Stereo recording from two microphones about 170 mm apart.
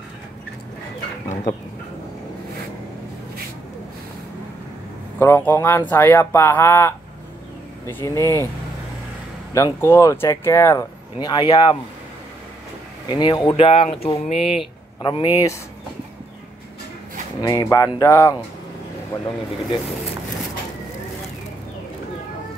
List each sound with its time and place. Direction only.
5.2 s speech: 15° left (ahead or behind)
9.5 s speech: 15° left (ahead or behind)
13.1 s speech: 25° left (ahead or behind)
17.4 s speech: 20° left (ahead or behind)